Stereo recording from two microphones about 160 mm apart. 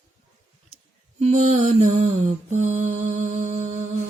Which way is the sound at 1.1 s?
45° right (ahead or behind).